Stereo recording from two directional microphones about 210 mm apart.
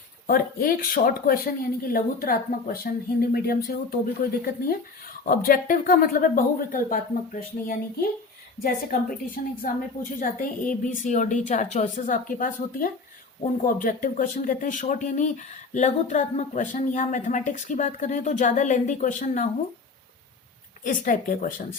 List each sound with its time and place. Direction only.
0.3 s speech: 45° left (ahead or behind)
20.8 s speech: 40° left (ahead or behind)